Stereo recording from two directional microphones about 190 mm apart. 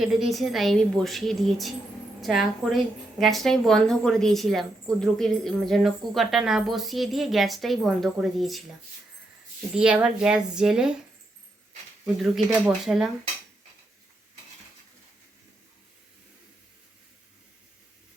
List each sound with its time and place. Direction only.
0.0 s a woman's voice: centre (ahead or behind)
9.7 s a woman's voice: 5° right (ahead or behind)
12.0 s a woman's voice: centre (ahead or behind)